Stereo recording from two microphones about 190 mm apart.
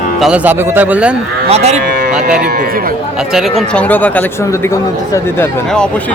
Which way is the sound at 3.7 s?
10° left (ahead or behind).